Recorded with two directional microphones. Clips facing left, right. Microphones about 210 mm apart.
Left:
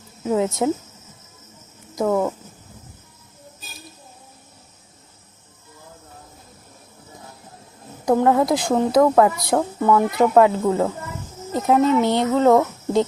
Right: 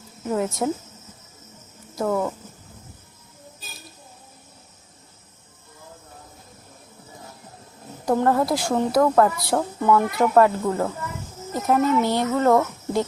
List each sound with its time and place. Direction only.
0.3 s a woman's voice: 20° left (ahead or behind)
2.0 s a woman's voice: 15° left (ahead or behind)
8.1 s a woman's voice: 10° left (ahead or behind)